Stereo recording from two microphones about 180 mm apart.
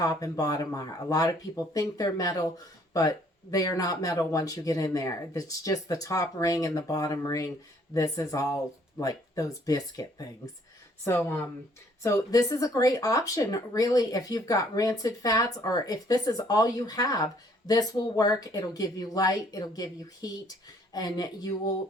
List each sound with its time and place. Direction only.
0.0 s speech: 20° left (ahead or behind)